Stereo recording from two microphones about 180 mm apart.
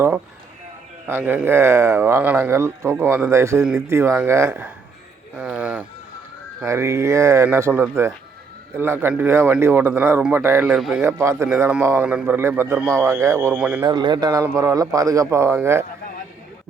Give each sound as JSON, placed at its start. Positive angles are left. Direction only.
{"t": 1.0, "sound": "speech", "side_deg": -15}
{"t": 11.0, "sound": "speech", "side_deg": -15}
{"t": 13.8, "sound": "speech", "side_deg": -25}